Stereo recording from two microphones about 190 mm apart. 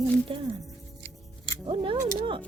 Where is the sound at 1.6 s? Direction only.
30° right (ahead or behind).